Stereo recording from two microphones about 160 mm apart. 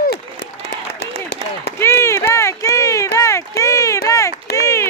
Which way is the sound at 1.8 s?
15° left (ahead or behind).